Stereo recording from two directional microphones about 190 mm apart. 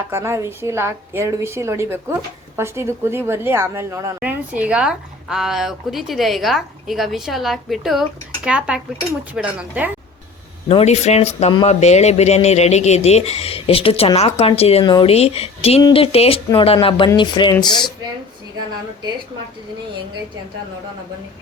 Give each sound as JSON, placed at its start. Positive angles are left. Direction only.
{"t": 0.1, "sound": "a woman's voice", "side_deg": -15}
{"t": 10.7, "sound": "speech", "side_deg": 35}